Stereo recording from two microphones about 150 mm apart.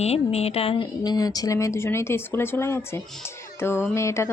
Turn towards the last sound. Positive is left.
turn(degrees=20)  # may be behind; listen again after turning